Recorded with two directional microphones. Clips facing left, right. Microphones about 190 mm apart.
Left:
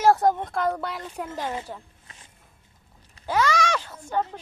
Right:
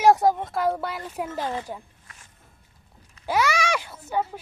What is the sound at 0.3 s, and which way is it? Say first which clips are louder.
Speech: right 1 dB; centre (ahead or behind).